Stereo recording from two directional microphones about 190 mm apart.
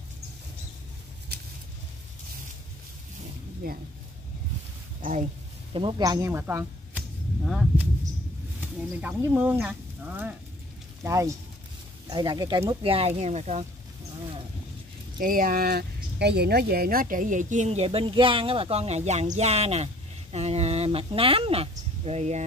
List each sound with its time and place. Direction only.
3.6 s speech: 50° right (ahead or behind)
5.0 s speech: 45° right (ahead or behind)
5.7 s speech: 25° right (ahead or behind); by 7.9 s 5° right (ahead or behind)
9.2 s speech: 10° right (ahead or behind); by 13.7 s 35° right (ahead or behind)
15.1 s speech: 50° right (ahead or behind)